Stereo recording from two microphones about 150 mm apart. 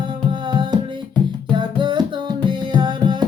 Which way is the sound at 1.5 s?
30° right (ahead or behind).